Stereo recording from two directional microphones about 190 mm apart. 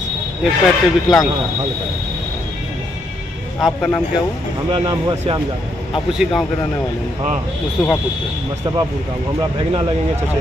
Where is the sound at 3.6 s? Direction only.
5° left (ahead or behind).